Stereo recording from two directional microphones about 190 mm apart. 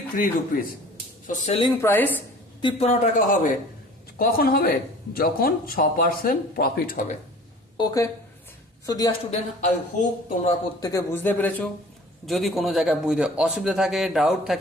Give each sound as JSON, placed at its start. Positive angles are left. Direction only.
{"t": 0.2, "sound": "speech", "side_deg": 45}
{"t": 1.3, "sound": "a man's voice", "side_deg": 30}
{"t": 1.8, "sound": "speech", "side_deg": 10}
{"t": 2.6, "sound": "a man's voice", "side_deg": 30}
{"t": 4.2, "sound": "speech", "side_deg": 50}
{"t": 7.8, "sound": "a woman's voice", "side_deg": 20}
{"t": 9.3, "sound": "a man's voice", "side_deg": 35}
{"t": 10.8, "sound": "a man's voice", "side_deg": 15}